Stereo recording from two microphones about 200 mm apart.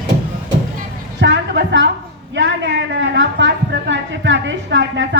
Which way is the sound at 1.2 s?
65° right (ahead or behind).